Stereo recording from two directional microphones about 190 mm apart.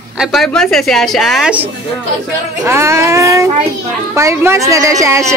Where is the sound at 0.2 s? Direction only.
Centre (ahead or behind).